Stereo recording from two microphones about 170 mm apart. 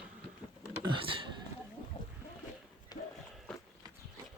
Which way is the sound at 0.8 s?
30° right (ahead or behind).